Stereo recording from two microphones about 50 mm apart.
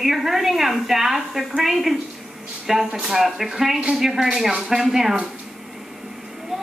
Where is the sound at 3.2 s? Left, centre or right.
Centre.